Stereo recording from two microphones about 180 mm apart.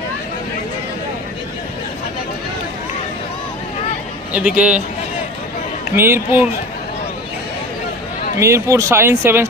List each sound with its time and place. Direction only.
4.3 s speech: 5° right (ahead or behind)
5.9 s speech: 15° right (ahead or behind)
8.4 s speech: 15° right (ahead or behind)